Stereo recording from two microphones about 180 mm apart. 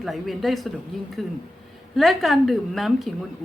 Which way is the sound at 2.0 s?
Centre (ahead or behind).